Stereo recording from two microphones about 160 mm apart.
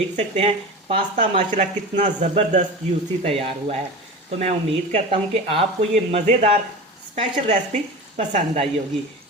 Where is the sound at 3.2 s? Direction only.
40° right (ahead or behind).